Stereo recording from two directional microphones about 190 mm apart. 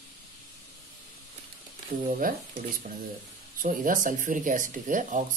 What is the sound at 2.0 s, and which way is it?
Speech, 45° right (ahead or behind).